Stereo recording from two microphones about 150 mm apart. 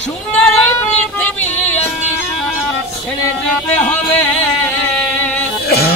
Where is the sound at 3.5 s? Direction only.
10° left (ahead or behind).